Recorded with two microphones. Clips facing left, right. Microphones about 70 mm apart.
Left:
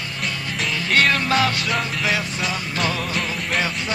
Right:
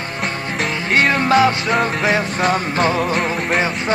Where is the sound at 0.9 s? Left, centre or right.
Right.